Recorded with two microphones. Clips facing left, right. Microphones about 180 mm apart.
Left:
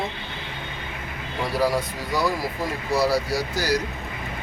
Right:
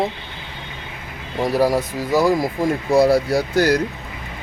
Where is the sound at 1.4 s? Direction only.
45° right (ahead or behind).